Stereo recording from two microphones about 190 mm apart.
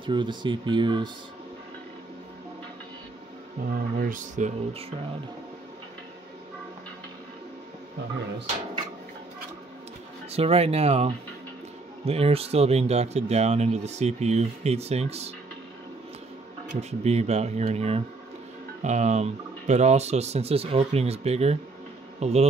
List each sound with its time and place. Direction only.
0.0 s speech: 25° right (ahead or behind)
3.7 s speech: 50° right (ahead or behind)
10.3 s speech: 30° right (ahead or behind)
17.0 s speech: 35° right (ahead or behind)